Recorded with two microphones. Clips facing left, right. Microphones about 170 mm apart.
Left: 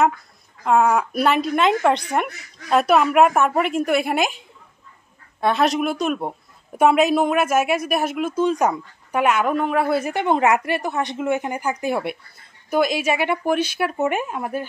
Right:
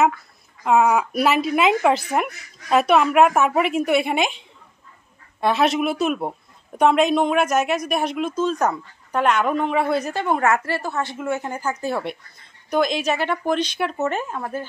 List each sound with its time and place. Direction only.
0.7 s speech: 5° right (ahead or behind)
10.1 s a woman's voice: 20° left (ahead or behind)